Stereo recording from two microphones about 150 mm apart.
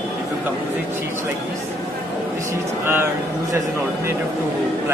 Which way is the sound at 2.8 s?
15° right (ahead or behind).